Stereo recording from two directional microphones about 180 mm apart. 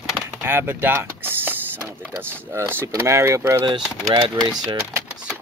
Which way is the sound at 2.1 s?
15° right (ahead or behind).